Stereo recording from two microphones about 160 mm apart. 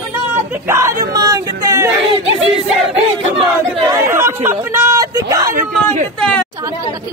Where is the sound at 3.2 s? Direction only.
40° right (ahead or behind).